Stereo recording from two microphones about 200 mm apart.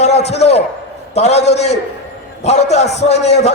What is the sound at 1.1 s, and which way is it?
A man's voice, 35° left (ahead or behind).